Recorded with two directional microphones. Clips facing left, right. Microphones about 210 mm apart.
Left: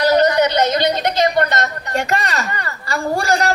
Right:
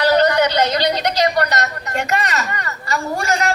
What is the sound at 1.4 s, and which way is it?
A woman's voice, 25° left (ahead or behind).